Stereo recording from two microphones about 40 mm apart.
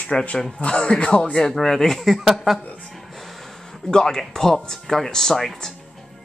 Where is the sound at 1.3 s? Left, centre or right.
Centre.